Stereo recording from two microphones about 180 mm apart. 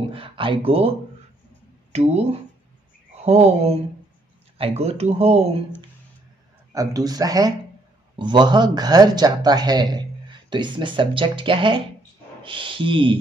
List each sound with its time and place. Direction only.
0.1 s speech: 30° right (ahead or behind)
6.7 s speech: 20° right (ahead or behind)